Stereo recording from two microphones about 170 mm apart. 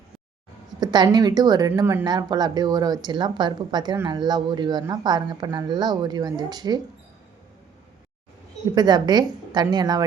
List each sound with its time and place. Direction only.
0.8 s a woman's voice: 25° right (ahead or behind)
2.0 s a woman's voice: 25° right (ahead or behind)
8.7 s a woman's voice: 25° right (ahead or behind)